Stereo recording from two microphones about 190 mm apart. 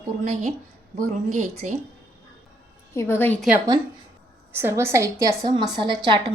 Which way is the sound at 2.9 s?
15° left (ahead or behind).